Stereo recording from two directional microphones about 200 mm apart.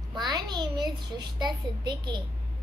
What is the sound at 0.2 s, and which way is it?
A child's voice, 20° right (ahead or behind).